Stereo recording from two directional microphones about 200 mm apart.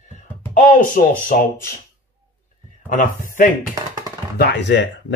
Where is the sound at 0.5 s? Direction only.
40° left (ahead or behind).